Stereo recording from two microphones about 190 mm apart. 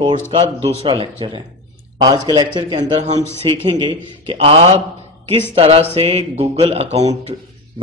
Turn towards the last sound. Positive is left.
turn(degrees=-35)  # may be behind; listen again after turning